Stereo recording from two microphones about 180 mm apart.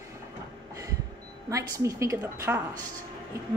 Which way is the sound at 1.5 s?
15° right (ahead or behind).